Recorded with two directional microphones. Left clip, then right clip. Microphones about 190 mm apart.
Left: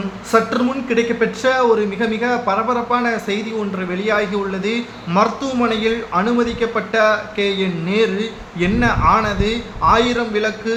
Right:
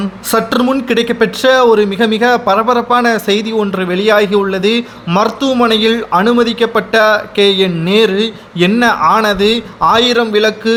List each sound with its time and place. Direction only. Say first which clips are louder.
0.3 s speech: right 4 dB; 65° right (ahead or behind)